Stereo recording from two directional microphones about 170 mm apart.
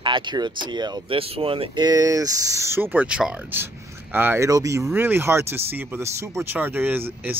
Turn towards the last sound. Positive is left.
turn(degrees=-10)  # may be behind; listen again after turning